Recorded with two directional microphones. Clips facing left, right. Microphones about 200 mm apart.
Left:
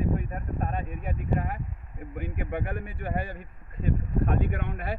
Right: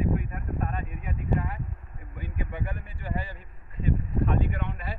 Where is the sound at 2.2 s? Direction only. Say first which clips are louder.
Left 4 dB; 55° left (ahead or behind).